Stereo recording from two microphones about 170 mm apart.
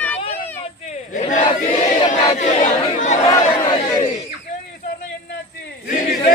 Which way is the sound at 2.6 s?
40° left (ahead or behind).